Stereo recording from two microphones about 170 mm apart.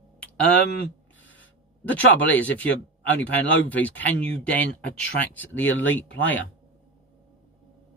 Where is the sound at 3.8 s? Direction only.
10° left (ahead or behind).